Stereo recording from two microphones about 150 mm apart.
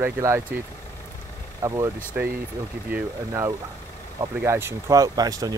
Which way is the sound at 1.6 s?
25° right (ahead or behind).